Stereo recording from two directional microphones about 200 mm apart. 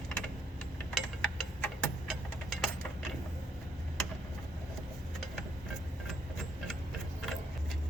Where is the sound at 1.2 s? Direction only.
5° left (ahead or behind).